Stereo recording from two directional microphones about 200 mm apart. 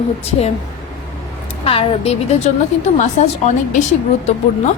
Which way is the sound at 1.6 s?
30° left (ahead or behind).